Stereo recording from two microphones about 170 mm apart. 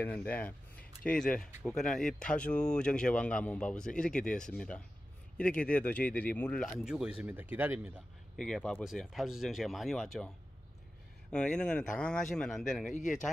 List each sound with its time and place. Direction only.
0.0 s speech: 10° left (ahead or behind)
6.6 s speech: centre (ahead or behind)
8.4 s speech: centre (ahead or behind)
11.3 s speech: 5° left (ahead or behind)
12.9 s speech: 50° left (ahead or behind)